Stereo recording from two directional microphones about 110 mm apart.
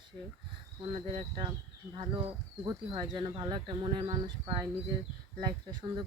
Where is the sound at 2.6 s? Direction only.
40° right (ahead or behind).